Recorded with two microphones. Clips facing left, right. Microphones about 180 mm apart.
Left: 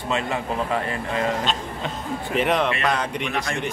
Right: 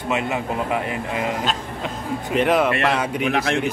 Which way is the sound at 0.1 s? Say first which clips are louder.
Right 2 dB; 15° right (ahead or behind).